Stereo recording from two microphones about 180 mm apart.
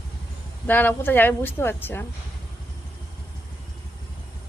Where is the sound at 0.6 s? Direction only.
10° left (ahead or behind).